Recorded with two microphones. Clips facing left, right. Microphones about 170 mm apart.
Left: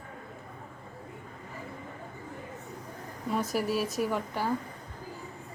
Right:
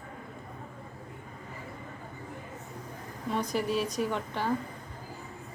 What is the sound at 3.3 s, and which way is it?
A woman's voice, 5° left (ahead or behind).